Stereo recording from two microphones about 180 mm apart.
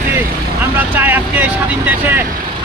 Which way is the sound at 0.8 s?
10° right (ahead or behind).